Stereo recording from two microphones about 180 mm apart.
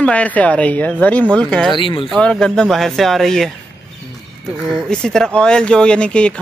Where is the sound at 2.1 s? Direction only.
5° left (ahead or behind).